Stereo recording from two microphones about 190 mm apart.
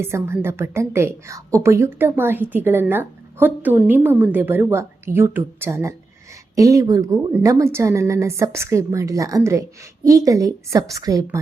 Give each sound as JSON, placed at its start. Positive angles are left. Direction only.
{"t": 0.0, "sound": "a woman's voice", "side_deg": -10}